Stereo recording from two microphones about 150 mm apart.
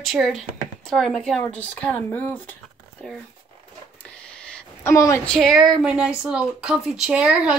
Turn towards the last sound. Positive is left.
turn(degrees=-5)  # may be behind; listen again after turning